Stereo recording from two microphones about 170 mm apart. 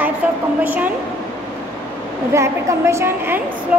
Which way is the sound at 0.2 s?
10° right (ahead or behind).